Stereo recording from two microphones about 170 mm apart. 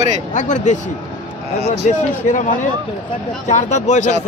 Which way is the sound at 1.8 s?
45° left (ahead or behind).